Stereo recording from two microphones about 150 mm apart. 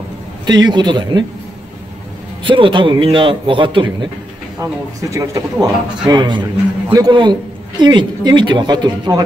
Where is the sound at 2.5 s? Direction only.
35° right (ahead or behind).